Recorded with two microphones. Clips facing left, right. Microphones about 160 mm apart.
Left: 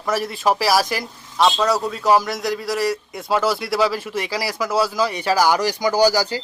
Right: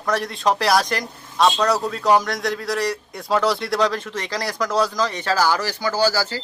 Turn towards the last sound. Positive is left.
turn(degrees=15)  # may be behind; listen again after turning